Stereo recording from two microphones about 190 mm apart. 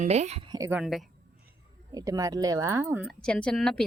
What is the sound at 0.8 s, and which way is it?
Speech, centre (ahead or behind).